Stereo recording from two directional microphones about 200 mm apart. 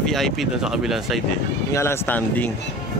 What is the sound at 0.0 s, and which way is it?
Speech, centre (ahead or behind).